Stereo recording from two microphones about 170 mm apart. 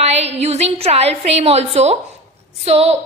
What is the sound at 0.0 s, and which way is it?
A woman's voice, 40° right (ahead or behind).